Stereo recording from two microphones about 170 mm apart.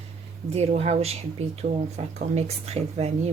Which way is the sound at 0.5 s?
40° right (ahead or behind).